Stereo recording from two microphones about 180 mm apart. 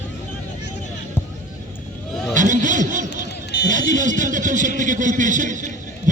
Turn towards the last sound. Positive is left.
turn(degrees=-45)  # may be behind; listen again after turning